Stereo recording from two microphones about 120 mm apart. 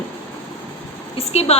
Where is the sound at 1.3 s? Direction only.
60° left (ahead or behind).